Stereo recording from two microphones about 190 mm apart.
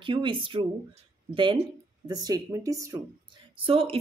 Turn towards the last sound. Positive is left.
turn(degrees=-30)  # may be behind; listen again after turning